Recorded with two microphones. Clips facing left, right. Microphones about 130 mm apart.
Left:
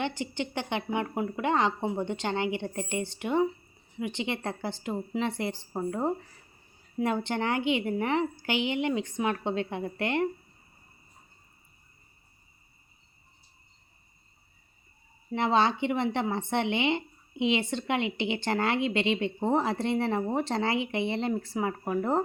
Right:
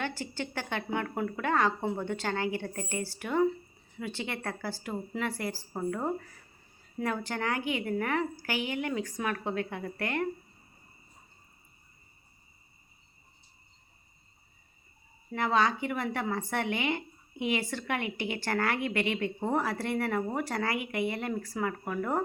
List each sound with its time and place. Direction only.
0.0 s a woman's voice: 20° left (ahead or behind)
15.3 s a woman's voice: 25° left (ahead or behind)